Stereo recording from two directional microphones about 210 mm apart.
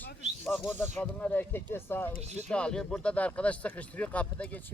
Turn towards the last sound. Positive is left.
turn(degrees=5)  # may be behind; listen again after turning